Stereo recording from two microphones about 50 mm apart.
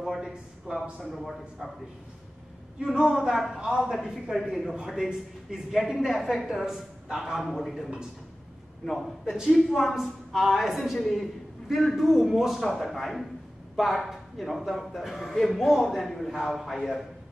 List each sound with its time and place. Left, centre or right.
0.2 s speech: centre
1.0 s a man's voice: centre
2.8 s a man's voice: centre